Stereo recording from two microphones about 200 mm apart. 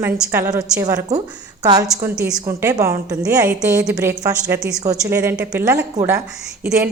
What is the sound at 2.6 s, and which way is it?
A woman's voice, 15° right (ahead or behind).